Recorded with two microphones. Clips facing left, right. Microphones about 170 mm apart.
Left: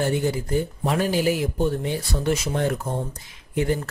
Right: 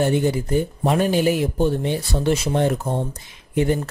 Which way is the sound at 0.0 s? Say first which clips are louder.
Right 4 dB; 20° right (ahead or behind).